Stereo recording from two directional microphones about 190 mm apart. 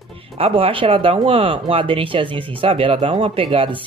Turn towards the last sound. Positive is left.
turn(degrees=-30)  # may be behind; listen again after turning